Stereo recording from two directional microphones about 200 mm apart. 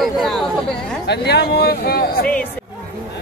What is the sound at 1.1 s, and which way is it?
Speech, 55° left (ahead or behind).